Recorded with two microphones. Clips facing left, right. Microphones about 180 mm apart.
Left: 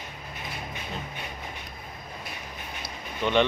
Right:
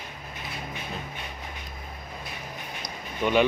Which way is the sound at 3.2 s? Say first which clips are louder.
Right 1 dB; 10° right (ahead or behind).